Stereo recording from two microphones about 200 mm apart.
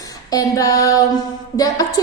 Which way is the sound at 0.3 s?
20° left (ahead or behind).